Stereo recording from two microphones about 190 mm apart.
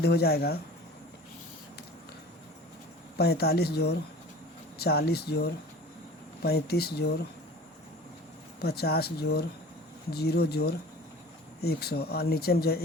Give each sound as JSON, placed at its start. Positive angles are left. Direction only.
{"t": 0.0, "sound": "speech", "side_deg": 55}
{"t": 3.2, "sound": "speech", "side_deg": 55}
{"t": 8.6, "sound": "speech", "side_deg": 55}